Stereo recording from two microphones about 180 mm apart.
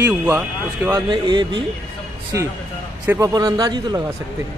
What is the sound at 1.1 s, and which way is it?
Speech, 25° right (ahead or behind).